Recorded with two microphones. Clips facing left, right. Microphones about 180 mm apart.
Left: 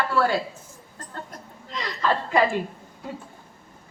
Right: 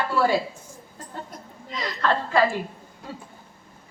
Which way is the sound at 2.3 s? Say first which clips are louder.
Even; 20° left (ahead or behind).